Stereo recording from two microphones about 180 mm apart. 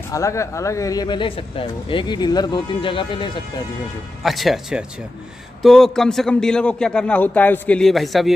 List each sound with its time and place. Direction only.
0.1 s speech: 15° left (ahead or behind)
4.2 s a man's voice: centre (ahead or behind)